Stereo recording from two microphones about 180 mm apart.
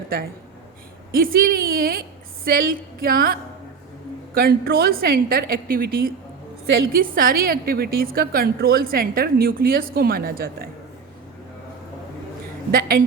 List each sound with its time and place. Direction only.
1.1 s a woman's voice: 55° right (ahead or behind)
4.4 s a woman's voice: 55° right (ahead or behind)